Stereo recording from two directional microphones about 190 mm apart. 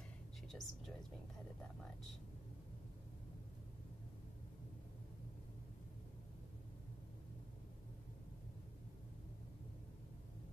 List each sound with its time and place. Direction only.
0.5 s whispering: centre (ahead or behind)